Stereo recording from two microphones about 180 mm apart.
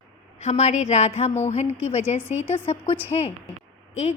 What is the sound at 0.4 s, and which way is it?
A woman's voice, 40° left (ahead or behind).